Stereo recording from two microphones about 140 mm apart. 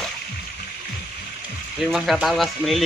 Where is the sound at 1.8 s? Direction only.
Centre (ahead or behind).